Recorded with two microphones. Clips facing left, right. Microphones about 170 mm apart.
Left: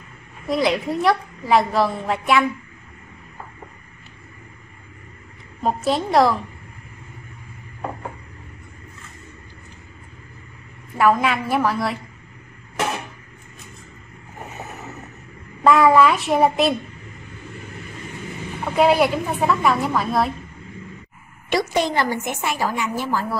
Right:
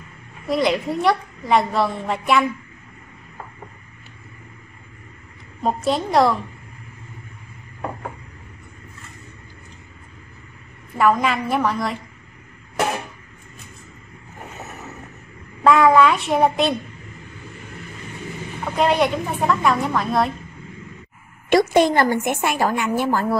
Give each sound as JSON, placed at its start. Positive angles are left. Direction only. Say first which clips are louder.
{"t": 0.5, "sound": "a woman's voice", "louder": "even", "side_deg": 0}
{"t": 5.6, "sound": "a woman's voice", "louder": "even", "side_deg": 0}
{"t": 11.0, "sound": "a woman's voice", "louder": "even", "side_deg": 0}
{"t": 15.6, "sound": "a woman's voice", "louder": "even", "side_deg": 0}
{"t": 18.7, "sound": "a woman's voice", "louder": "left 2 dB", "side_deg": 5}
{"t": 21.5, "sound": "a woman's voice", "louder": "right 6 dB", "side_deg": -50}